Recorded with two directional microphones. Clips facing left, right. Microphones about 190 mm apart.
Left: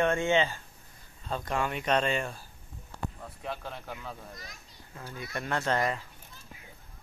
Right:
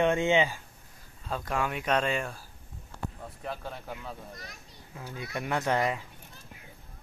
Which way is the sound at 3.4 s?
Centre (ahead or behind).